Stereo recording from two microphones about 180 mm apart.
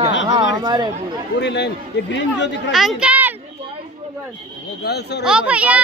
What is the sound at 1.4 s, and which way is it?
A man's voice, 75° left (ahead or behind).